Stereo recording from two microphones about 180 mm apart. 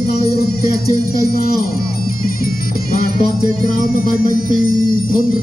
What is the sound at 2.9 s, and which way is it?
Music, 55° left (ahead or behind).